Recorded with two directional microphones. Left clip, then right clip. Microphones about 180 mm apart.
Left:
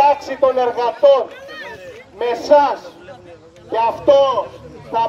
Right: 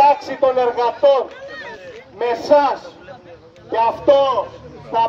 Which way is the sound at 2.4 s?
5° right (ahead or behind).